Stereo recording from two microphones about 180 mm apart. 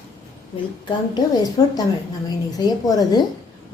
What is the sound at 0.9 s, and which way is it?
A woman's voice, 20° left (ahead or behind).